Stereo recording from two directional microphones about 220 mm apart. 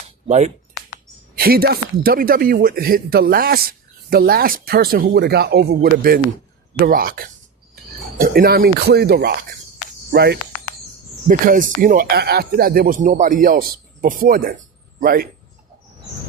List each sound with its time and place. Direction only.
0.3 s speech: 30° right (ahead or behind)
1.4 s speech: 45° right (ahead or behind)